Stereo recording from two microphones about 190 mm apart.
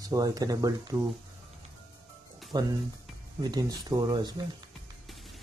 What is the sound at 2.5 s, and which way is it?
Speech, 20° right (ahead or behind).